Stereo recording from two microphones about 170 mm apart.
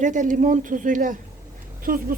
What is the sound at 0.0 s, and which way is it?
A woman's voice, 50° right (ahead or behind).